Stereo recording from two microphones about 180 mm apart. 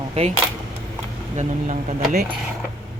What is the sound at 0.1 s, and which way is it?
Speech, 35° right (ahead or behind).